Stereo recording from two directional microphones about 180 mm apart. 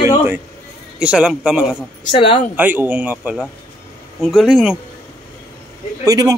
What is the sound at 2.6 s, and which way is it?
A man's voice, 10° right (ahead or behind).